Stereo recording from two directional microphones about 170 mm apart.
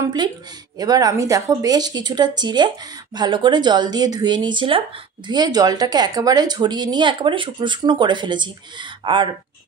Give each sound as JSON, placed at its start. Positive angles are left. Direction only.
{"t": 0.0, "sound": "a woman's voice", "side_deg": -25}